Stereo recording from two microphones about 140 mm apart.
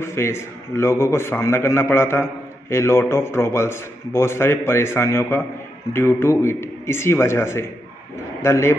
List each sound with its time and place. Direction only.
0.0 s a man's voice: 20° left (ahead or behind)